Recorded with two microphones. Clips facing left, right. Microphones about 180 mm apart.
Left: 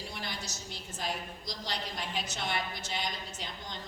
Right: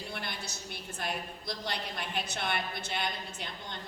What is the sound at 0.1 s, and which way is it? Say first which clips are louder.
A woman's voice: right 1 dB; 60° right (ahead or behind).